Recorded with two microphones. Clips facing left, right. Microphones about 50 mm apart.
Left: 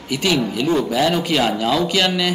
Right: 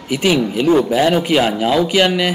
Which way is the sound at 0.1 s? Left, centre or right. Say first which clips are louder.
Right 4 dB; centre.